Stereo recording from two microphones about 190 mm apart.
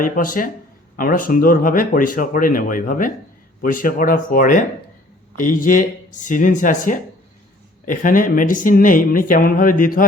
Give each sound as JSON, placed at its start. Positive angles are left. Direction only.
{"t": 0.0, "sound": "speech", "side_deg": 45}